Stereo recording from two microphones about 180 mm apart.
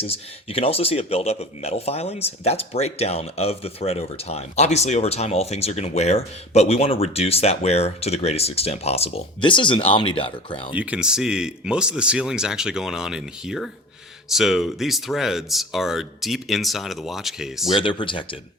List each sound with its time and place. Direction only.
0.0 s speech: 30° left (ahead or behind)
10.8 s speech: 5° right (ahead or behind)
17.7 s speech: 25° left (ahead or behind)